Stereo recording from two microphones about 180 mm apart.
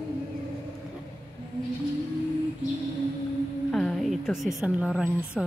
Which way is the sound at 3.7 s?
5° left (ahead or behind).